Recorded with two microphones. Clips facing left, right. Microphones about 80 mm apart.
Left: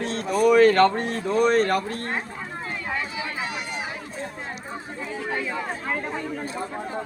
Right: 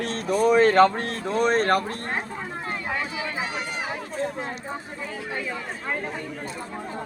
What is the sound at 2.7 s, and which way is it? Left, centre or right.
Run, right.